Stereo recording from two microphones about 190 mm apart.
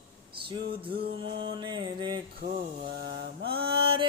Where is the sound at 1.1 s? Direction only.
25° right (ahead or behind).